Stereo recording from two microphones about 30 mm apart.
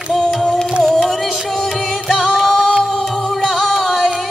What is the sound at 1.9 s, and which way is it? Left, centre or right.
Music, centre.